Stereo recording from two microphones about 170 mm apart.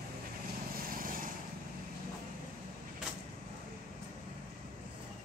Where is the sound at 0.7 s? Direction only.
60° right (ahead or behind).